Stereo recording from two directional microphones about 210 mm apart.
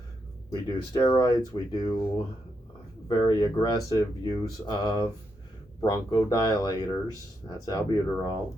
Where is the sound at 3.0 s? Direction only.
20° left (ahead or behind).